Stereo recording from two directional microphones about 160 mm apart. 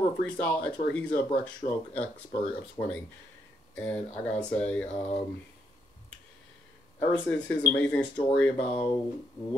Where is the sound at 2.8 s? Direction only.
25° left (ahead or behind).